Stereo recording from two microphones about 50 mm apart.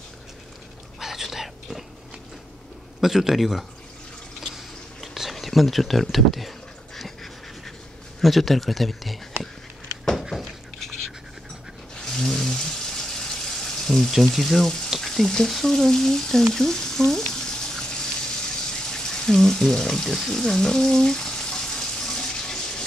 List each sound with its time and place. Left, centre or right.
0.9 s whispering: centre
3.0 s a man's voice: centre
4.4 s a sound: centre
8.2 s speech: centre
10.3 s a sound: centre
14.1 s speech: centre
15.0 s frying: centre